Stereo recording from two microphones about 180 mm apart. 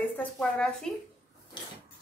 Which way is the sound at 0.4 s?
5° left (ahead or behind).